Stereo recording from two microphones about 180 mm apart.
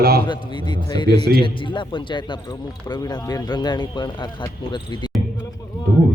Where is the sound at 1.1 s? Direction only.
65° right (ahead or behind).